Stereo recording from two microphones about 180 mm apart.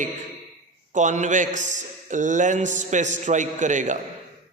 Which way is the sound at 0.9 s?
45° right (ahead or behind).